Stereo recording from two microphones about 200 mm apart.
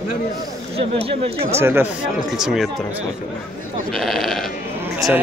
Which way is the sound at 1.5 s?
10° right (ahead or behind).